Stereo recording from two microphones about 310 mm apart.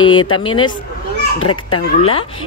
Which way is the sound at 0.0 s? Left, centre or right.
Centre.